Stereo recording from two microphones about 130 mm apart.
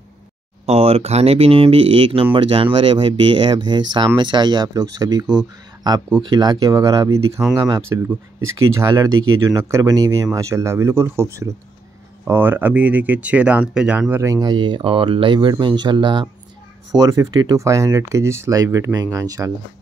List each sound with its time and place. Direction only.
0.7 s speech: 55° right (ahead or behind); by 5.2 s 30° right (ahead or behind)
6.2 s speech: 30° right (ahead or behind); by 14.2 s 10° right (ahead or behind)
14.2 s speech: 30° right (ahead or behind)
16.9 s speech: 25° right (ahead or behind)